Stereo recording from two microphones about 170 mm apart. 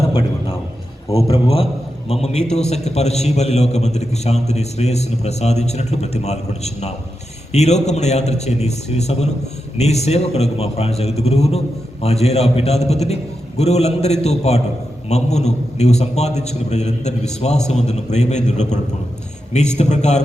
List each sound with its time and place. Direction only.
0.1 s a man's voice: 30° left (ahead or behind)